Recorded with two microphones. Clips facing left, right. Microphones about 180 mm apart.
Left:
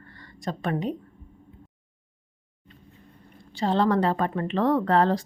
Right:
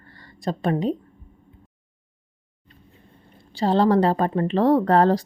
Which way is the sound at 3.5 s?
35° right (ahead or behind).